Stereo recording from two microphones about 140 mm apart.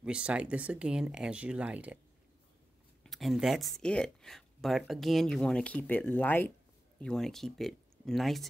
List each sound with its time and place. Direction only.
0.0 s speech: 5° right (ahead or behind)
3.0 s speech: centre (ahead or behind)